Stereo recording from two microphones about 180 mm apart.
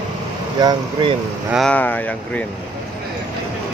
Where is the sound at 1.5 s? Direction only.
5° left (ahead or behind).